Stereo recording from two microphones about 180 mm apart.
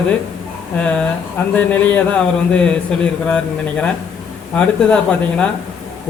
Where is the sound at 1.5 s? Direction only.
10° left (ahead or behind).